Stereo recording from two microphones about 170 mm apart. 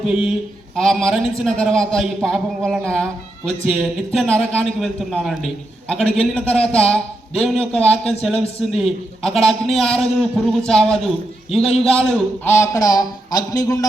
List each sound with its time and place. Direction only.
0.1 s a man's voice: 5° right (ahead or behind)
12.5 s speech: 15° left (ahead or behind)